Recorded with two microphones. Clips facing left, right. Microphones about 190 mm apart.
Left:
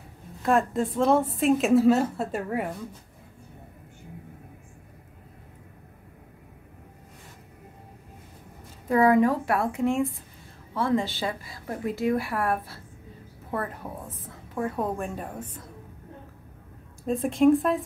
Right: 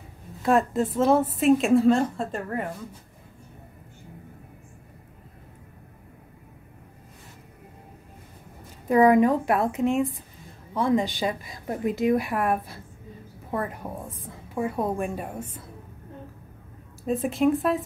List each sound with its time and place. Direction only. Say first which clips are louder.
0.4 s a woman's voice: right 2 dB; centre (ahead or behind)
8.8 s a woman's voice: right 2 dB; 20° right (ahead or behind)
17.0 s a woman's voice: left 2 dB; 5° right (ahead or behind)